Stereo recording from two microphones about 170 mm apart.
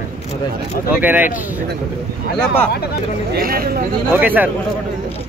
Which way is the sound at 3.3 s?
60° right (ahead or behind).